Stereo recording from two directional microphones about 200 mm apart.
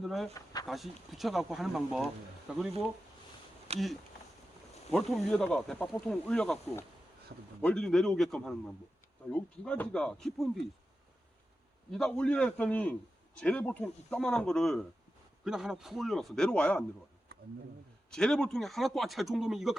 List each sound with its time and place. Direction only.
0.0 s a man's voice: centre (ahead or behind)
3.7 s speech: 30° right (ahead or behind)
4.9 s a man's voice: centre (ahead or behind)
11.9 s a man's voice: 5° left (ahead or behind)
18.1 s a man's voice: 5° left (ahead or behind)